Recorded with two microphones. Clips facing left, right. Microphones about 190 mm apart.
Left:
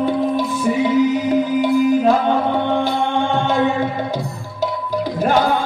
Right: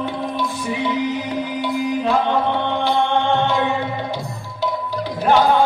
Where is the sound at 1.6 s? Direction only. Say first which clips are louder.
Left 5 dB; 45° left (ahead or behind).